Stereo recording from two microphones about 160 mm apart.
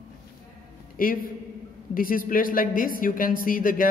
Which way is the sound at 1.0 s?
60° left (ahead or behind).